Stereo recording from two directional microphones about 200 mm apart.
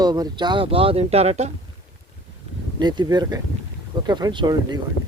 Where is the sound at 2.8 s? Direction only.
20° right (ahead or behind).